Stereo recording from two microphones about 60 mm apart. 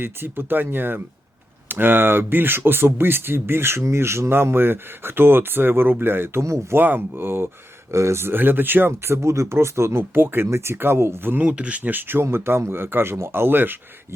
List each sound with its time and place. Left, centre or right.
0.0 s speech: right
6.4 s speech: right
6.7 s speech: right
8.9 s speech: right
11.4 s speech: centre